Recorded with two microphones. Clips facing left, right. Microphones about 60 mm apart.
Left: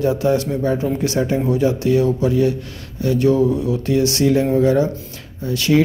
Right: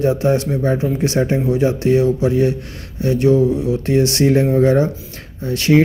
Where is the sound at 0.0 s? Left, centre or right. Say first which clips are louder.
Right 1 dB; right.